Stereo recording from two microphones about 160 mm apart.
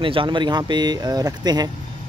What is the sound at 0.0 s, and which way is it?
Speech, 35° right (ahead or behind).